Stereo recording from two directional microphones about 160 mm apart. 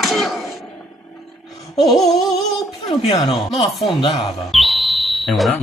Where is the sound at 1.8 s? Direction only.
Centre (ahead or behind).